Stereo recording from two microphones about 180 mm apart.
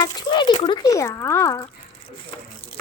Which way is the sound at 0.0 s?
25° left (ahead or behind).